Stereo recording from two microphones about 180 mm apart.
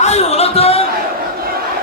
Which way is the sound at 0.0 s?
35° left (ahead or behind).